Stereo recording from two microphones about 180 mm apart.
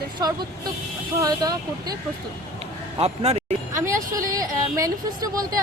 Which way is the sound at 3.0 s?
35° right (ahead or behind).